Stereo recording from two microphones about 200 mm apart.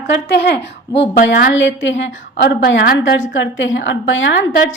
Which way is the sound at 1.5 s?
65° left (ahead or behind).